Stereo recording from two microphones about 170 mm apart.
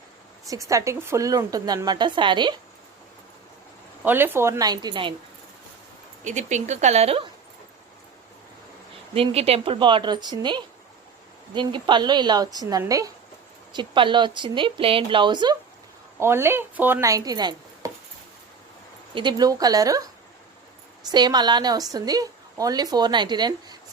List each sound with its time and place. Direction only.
0.4 s a woman's voice: 20° right (ahead or behind)
4.0 s a woman's voice: 10° right (ahead or behind)
6.2 s speech: 45° right (ahead or behind)
9.1 s a woman's voice: 35° right (ahead or behind)
16.1 s speech: 15° right (ahead or behind)
19.1 s a woman's voice: 25° right (ahead or behind)
21.1 s a woman's voice: 25° right (ahead or behind)